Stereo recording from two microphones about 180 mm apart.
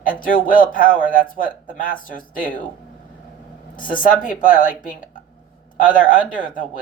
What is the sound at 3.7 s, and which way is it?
Speech, 50° left (ahead or behind).